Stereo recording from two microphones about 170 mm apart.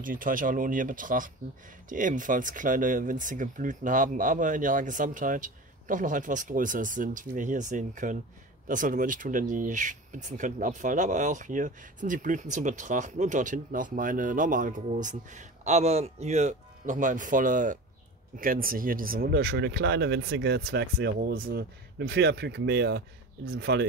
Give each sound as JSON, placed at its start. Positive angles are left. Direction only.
{"t": 0.0, "sound": "speech", "side_deg": -55}